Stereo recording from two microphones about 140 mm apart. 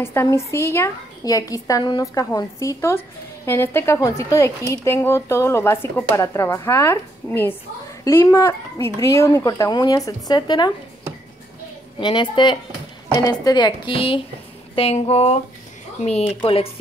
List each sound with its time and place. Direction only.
0.0 s speech: 15° left (ahead or behind)
12.0 s a woman's voice: 35° left (ahead or behind)
14.8 s a sound: 45° left (ahead or behind)